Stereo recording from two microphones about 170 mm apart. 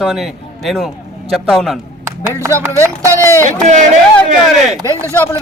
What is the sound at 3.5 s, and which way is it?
Speech, 45° right (ahead or behind).